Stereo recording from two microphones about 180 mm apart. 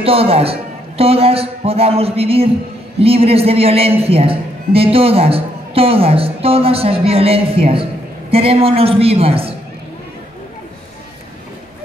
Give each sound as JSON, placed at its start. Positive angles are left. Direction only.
{"t": 0.0, "sound": "speech", "side_deg": -30}